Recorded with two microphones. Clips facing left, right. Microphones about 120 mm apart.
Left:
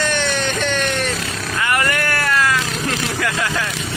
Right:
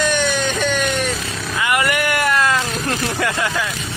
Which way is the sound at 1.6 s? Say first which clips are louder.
Right 1 dB; 15° right (ahead or behind).